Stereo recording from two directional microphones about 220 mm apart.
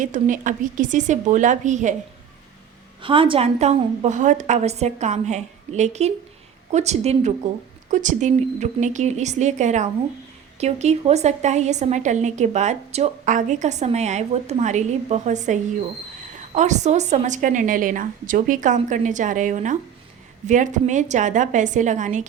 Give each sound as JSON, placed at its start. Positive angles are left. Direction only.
{"t": 0.0, "sound": "a woman's voice", "side_deg": -35}
{"t": 3.0, "sound": "a woman's voice", "side_deg": -25}